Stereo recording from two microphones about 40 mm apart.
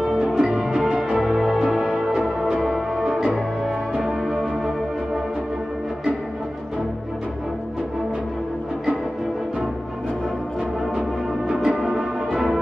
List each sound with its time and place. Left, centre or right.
0.2 s music: centre
0.7 s music: centre
1.2 s music: centre
11.5 s music: centre